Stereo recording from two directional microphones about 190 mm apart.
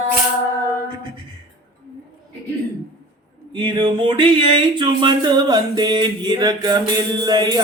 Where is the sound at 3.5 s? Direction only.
25° right (ahead or behind).